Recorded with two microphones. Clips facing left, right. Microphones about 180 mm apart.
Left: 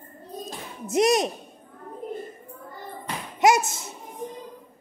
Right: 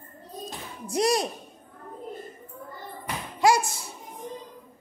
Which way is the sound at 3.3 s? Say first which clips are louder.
Left 2 dB; 20° left (ahead or behind).